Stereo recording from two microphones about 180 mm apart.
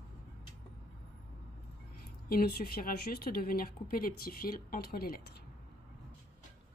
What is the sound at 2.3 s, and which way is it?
A woman's voice, 55° left (ahead or behind).